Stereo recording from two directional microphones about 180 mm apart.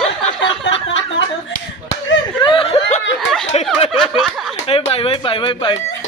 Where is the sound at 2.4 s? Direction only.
30° left (ahead or behind).